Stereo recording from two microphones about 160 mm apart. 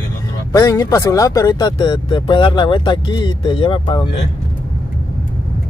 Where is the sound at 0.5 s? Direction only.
20° left (ahead or behind).